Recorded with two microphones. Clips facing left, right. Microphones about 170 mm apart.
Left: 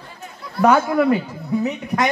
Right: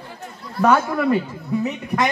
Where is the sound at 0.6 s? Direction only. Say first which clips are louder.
Left 2 dB; 10° left (ahead or behind).